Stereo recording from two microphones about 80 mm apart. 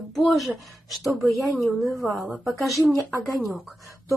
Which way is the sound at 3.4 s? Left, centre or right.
Centre.